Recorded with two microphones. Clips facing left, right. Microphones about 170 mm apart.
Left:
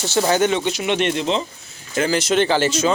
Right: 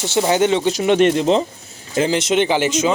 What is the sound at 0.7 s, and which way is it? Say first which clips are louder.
Speech: right 6 dB; 40° right (ahead or behind).